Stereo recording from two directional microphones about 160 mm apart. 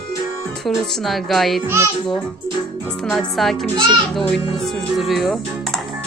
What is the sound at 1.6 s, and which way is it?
Speech, 15° right (ahead or behind).